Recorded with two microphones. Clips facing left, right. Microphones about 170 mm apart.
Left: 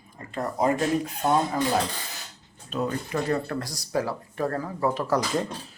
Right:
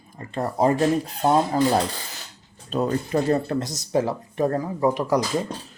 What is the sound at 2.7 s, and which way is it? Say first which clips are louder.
Speech: right 5 dB; 35° right (ahead or behind).